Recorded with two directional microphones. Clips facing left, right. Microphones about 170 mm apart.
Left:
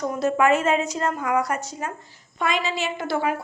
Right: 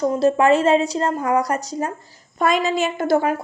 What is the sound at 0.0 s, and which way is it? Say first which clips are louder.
A woman's voice: right 5 dB; 30° right (ahead or behind).